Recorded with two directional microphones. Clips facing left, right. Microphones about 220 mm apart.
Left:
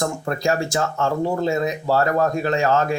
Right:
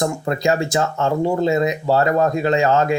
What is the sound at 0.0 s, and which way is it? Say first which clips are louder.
Speech: right 3 dB; 20° right (ahead or behind).